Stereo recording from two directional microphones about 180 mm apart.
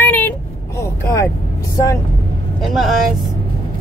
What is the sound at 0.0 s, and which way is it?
Vehicle, 10° left (ahead or behind).